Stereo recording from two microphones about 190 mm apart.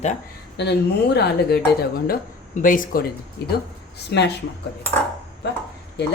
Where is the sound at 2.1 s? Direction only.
45° left (ahead or behind).